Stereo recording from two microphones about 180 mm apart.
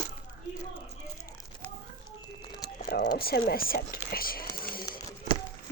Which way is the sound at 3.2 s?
60° left (ahead or behind).